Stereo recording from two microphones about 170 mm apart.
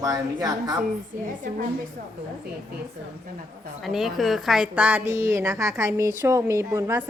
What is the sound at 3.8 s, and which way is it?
A woman's voice, centre (ahead or behind).